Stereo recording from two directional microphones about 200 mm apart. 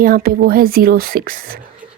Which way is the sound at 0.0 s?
45° right (ahead or behind).